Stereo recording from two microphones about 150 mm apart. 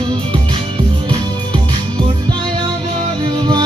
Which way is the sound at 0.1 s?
35° right (ahead or behind).